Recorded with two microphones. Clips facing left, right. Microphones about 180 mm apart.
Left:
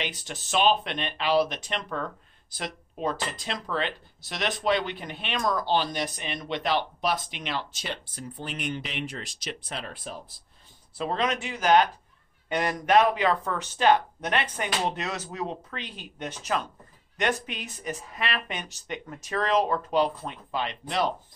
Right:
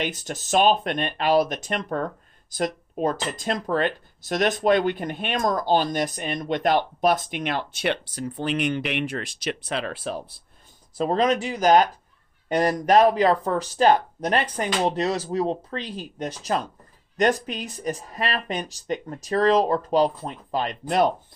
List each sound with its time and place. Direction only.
0.0 s speech: 45° right (ahead or behind); by 10.4 s 75° right (ahead or behind)
11.0 s speech: 40° right (ahead or behind)